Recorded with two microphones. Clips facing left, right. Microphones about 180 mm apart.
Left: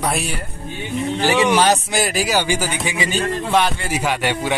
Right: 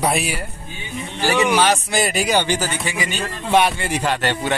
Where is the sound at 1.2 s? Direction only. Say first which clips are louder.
Left 1 dB; 20° left (ahead or behind).